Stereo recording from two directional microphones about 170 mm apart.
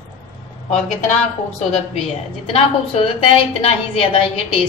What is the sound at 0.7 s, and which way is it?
Speech, 40° left (ahead or behind).